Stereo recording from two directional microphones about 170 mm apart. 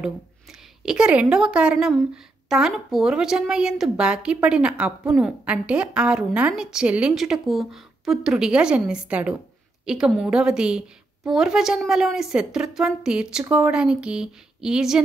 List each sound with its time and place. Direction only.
0.0 s a woman's voice: 5° right (ahead or behind)